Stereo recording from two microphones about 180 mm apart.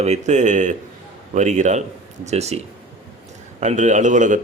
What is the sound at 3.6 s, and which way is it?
Speech, 40° right (ahead or behind).